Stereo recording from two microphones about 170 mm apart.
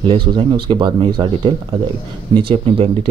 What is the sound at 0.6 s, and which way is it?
Speech, 30° right (ahead or behind).